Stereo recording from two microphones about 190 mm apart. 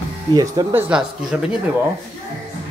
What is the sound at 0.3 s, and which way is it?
Speech, 20° right (ahead or behind).